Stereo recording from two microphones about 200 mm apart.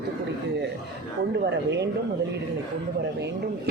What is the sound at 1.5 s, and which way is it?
Speech, 60° right (ahead or behind).